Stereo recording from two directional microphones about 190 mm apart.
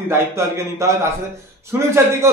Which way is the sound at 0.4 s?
15° right (ahead or behind).